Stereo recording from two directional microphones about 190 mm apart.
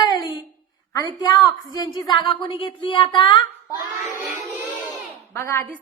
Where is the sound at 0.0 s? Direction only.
20° left (ahead or behind).